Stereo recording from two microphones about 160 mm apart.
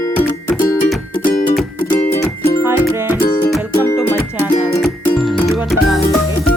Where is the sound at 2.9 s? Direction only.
15° right (ahead or behind).